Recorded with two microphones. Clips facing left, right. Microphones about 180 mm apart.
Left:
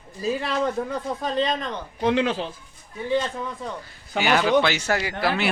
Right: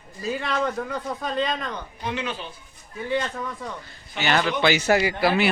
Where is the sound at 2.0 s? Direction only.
90° left.